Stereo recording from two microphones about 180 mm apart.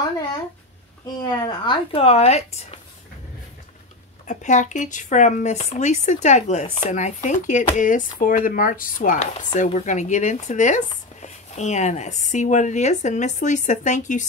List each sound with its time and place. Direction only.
1.2 s a woman's voice: 20° left (ahead or behind)
2.0 s speech: 35° left (ahead or behind)
4.3 s speech: 40° left (ahead or behind)